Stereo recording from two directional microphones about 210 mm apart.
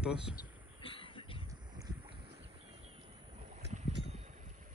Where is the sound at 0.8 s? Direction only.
25° left (ahead or behind).